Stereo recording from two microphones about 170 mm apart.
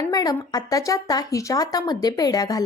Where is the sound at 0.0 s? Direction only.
20° left (ahead or behind).